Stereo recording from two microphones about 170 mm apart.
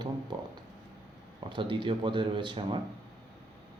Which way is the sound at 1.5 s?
30° right (ahead or behind).